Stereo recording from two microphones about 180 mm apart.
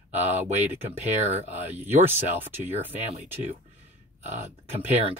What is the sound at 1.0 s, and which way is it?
Speech, 40° right (ahead or behind).